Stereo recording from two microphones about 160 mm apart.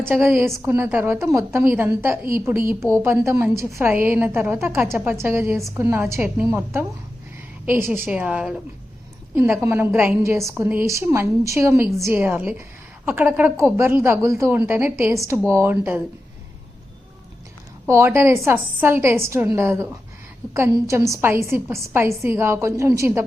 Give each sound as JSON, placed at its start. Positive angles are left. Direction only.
{"t": 0.1, "sound": "a woman's voice", "side_deg": -10}
{"t": 17.8, "sound": "a woman's voice", "side_deg": -15}